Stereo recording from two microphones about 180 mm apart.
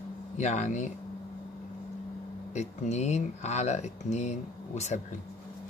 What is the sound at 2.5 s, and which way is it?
Speech, 40° left (ahead or behind).